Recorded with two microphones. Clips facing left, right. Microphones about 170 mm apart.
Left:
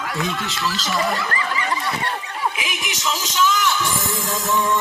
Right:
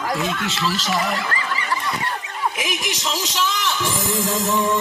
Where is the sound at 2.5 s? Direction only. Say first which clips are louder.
Right 3 dB; 45° right (ahead or behind).